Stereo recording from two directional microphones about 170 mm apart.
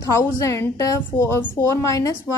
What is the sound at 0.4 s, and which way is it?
A woman's voice, 15° left (ahead or behind).